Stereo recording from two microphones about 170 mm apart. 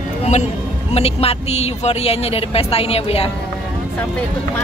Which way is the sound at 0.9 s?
35° left (ahead or behind).